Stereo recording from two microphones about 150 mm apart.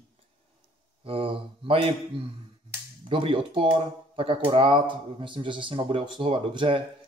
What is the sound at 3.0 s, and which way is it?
Speech, 35° right (ahead or behind).